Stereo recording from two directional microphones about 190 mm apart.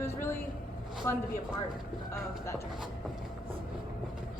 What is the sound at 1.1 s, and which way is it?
Speech, 15° left (ahead or behind).